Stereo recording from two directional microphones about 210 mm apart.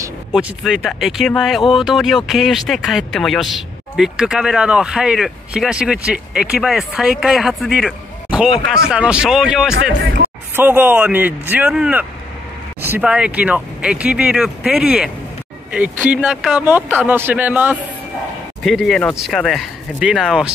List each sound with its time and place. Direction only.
0.3 s speech: 5° right (ahead or behind)